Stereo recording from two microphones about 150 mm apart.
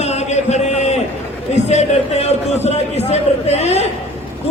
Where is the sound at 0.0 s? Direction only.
45° left (ahead or behind).